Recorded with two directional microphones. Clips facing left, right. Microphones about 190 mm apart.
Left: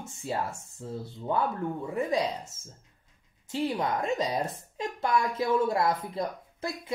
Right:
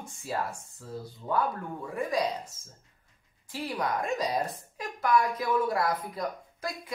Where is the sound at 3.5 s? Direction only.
25° left (ahead or behind).